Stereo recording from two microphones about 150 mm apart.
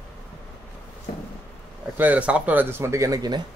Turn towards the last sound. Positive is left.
turn(degrees=-25)  # may be behind; listen again after turning